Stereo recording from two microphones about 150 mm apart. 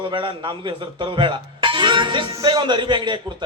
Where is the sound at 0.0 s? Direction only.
35° right (ahead or behind).